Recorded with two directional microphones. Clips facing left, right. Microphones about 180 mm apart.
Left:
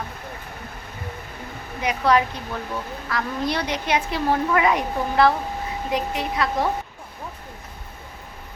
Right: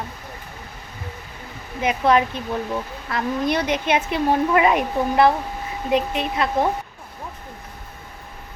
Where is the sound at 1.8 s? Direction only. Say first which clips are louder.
Right 2 dB; 20° right (ahead or behind).